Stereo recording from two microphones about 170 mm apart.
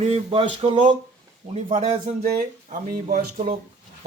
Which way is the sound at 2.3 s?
55° right (ahead or behind).